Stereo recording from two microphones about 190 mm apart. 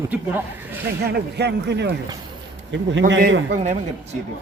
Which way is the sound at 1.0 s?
60° right (ahead or behind).